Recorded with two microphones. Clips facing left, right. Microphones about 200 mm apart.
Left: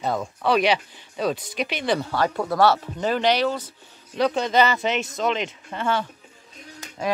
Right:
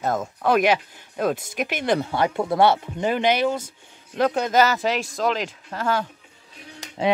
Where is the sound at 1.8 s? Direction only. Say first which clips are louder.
Right 2 dB; 20° right (ahead or behind).